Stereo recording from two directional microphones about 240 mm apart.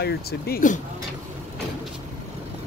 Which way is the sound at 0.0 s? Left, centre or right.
Left.